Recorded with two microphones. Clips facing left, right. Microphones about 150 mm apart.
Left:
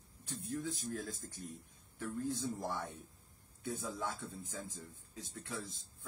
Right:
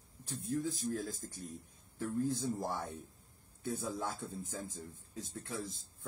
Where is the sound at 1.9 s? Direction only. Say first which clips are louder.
Right 4 dB; 35° right (ahead or behind).